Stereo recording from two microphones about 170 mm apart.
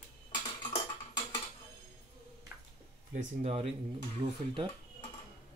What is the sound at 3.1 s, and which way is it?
Speech, 40° right (ahead or behind).